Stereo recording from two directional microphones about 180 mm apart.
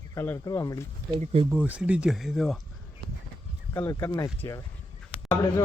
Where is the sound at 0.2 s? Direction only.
15° left (ahead or behind).